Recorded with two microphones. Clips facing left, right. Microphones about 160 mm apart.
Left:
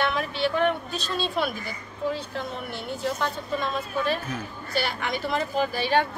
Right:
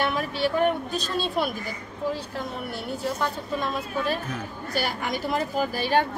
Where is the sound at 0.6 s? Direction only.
10° right (ahead or behind).